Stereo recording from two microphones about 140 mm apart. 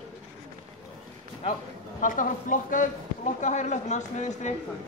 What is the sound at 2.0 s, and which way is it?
Speech, 70° left (ahead or behind).